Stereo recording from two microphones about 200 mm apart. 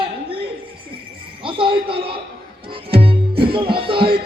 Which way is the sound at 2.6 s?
25° right (ahead or behind).